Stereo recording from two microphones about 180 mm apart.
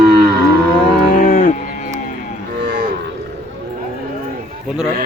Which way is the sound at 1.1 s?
50° left (ahead or behind).